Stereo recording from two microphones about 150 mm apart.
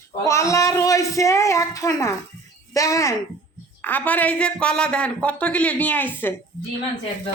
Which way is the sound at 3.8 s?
10° left (ahead or behind).